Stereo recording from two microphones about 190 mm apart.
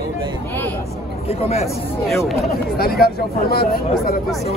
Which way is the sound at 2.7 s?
55° left (ahead or behind).